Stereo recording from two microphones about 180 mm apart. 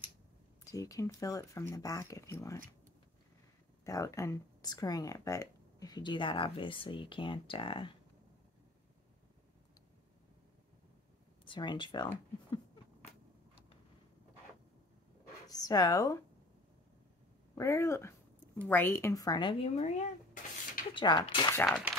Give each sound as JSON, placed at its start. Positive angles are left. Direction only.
{"t": 0.7, "sound": "speech", "side_deg": 20}
{"t": 3.8, "sound": "speech", "side_deg": 20}
{"t": 11.4, "sound": "speech", "side_deg": 25}
{"t": 15.4, "sound": "speech", "side_deg": 20}
{"t": 17.6, "sound": "speech", "side_deg": 15}
{"t": 20.9, "sound": "speech", "side_deg": 25}
{"t": 21.6, "sound": "speech", "side_deg": 0}